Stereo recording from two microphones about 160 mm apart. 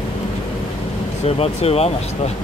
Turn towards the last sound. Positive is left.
turn(degrees=40)  # may be behind; listen again after turning